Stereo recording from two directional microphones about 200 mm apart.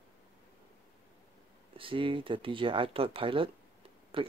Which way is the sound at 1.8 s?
25° right (ahead or behind).